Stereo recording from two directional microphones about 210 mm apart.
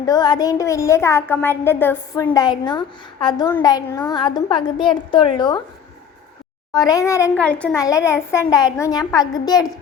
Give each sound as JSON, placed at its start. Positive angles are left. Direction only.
{"t": 0.0, "sound": "a woman's voice", "side_deg": 20}
{"t": 6.7, "sound": "a woman's voice", "side_deg": 15}